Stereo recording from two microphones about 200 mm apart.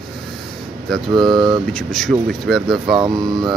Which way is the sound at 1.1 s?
20° right (ahead or behind).